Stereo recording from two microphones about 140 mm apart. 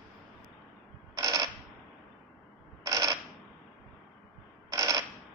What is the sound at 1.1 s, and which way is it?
Coin, 30° right (ahead or behind).